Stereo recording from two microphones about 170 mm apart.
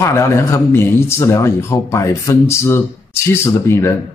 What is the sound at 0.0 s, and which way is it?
Speech, 15° left (ahead or behind).